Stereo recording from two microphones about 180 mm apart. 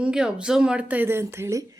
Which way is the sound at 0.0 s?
5° right (ahead or behind).